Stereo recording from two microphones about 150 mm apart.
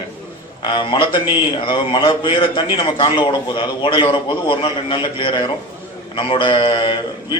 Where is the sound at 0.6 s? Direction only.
30° left (ahead or behind).